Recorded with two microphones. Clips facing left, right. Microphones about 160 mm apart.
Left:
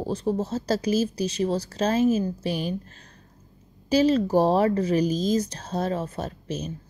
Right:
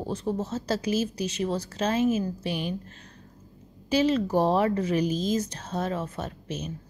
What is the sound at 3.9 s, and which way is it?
Speech, 35° left (ahead or behind).